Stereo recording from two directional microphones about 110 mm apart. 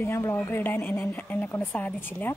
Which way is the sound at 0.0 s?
25° left (ahead or behind).